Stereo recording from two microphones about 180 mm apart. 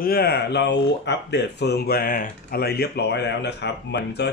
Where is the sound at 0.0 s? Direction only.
60° left (ahead or behind).